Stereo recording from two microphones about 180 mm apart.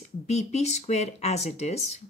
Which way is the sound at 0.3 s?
40° left (ahead or behind).